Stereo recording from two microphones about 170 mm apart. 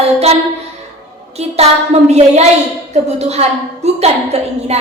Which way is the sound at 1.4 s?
40° right (ahead or behind).